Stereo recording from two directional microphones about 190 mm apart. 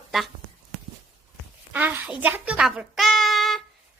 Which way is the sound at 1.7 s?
10° right (ahead or behind).